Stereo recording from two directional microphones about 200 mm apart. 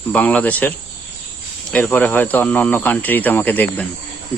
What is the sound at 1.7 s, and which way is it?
Speech, 10° left (ahead or behind).